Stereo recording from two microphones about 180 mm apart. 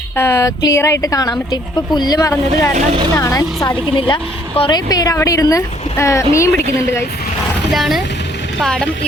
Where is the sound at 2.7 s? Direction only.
40° right (ahead or behind).